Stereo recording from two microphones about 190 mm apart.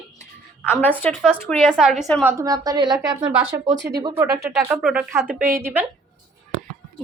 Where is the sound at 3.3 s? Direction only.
10° right (ahead or behind).